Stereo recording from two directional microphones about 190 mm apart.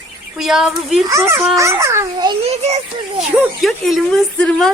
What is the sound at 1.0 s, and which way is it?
A child's voice, 15° right (ahead or behind).